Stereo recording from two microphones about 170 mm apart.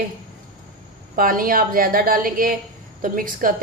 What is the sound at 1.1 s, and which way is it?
A woman's voice, 55° right (ahead or behind).